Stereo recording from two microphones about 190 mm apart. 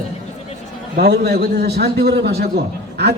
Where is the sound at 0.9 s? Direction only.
55° right (ahead or behind).